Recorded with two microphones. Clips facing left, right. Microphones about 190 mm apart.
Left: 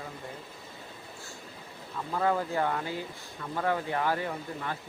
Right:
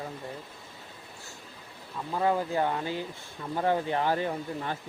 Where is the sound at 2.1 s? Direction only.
20° right (ahead or behind).